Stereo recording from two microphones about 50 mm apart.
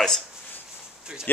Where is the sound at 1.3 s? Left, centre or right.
Left.